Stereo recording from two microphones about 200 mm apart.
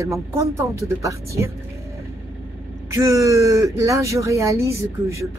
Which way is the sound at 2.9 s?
15° right (ahead or behind).